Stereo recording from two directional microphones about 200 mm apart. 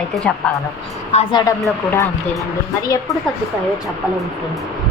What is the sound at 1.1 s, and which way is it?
Speech, 20° left (ahead or behind).